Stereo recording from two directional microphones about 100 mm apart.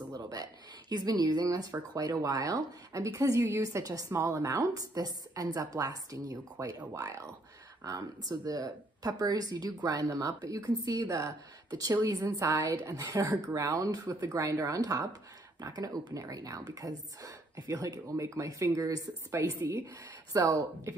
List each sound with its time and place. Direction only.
0.1 s speech: 40° right (ahead or behind)
19.3 s speech: 20° right (ahead or behind)